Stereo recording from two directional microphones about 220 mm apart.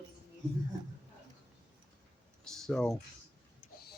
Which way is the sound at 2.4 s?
Centre (ahead or behind).